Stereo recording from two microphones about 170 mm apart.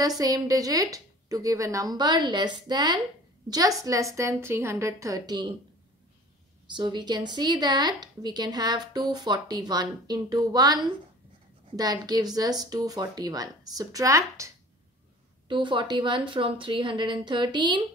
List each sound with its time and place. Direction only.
0.0 s speech: 20° right (ahead or behind)
6.7 s speech: 25° right (ahead or behind)
15.4 s speech: 30° right (ahead or behind)